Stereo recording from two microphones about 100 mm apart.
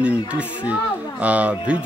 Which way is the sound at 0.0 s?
15° right (ahead or behind).